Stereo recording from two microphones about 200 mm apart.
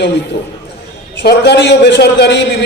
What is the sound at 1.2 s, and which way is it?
A man's voice, 55° left (ahead or behind).